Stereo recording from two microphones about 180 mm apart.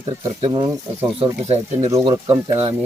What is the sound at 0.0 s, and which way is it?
Speech, 20° right (ahead or behind).